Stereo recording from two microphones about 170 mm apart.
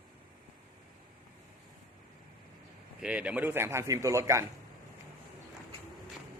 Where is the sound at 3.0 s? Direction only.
5° right (ahead or behind).